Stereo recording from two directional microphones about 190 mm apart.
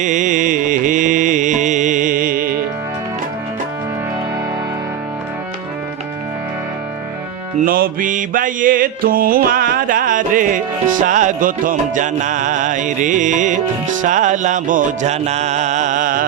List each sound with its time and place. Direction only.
0.0 s music: 40° right (ahead or behind)
7.6 s music: 45° right (ahead or behind)